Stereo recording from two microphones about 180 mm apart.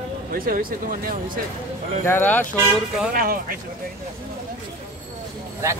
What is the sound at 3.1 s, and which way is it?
Speech, 50° right (ahead or behind).